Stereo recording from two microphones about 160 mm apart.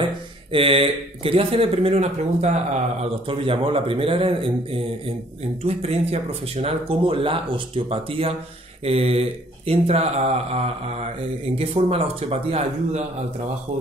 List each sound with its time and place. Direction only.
0.5 s speech: 35° right (ahead or behind)